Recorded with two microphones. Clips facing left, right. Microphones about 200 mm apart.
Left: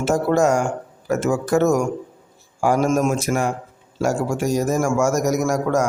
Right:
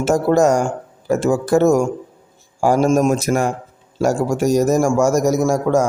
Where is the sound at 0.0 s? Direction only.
40° right (ahead or behind).